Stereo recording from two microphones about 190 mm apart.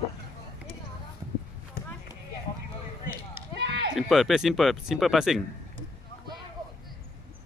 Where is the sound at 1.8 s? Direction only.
50° left (ahead or behind).